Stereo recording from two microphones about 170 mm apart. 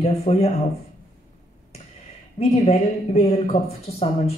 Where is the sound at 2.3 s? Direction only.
40° left (ahead or behind).